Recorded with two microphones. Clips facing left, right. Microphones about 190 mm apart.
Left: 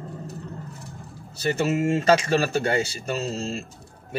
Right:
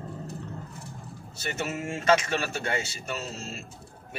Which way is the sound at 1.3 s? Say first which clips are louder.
Left 9 dB; 35° left (ahead or behind).